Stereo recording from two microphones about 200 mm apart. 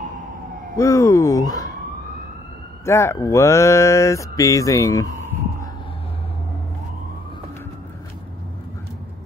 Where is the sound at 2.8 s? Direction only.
15° left (ahead or behind).